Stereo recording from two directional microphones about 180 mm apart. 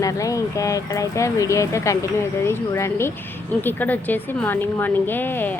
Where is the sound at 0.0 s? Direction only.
20° left (ahead or behind).